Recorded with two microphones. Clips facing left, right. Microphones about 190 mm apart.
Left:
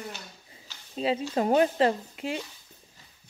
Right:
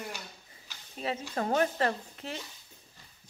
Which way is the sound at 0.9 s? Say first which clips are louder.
Left 7 dB; 15° left (ahead or behind).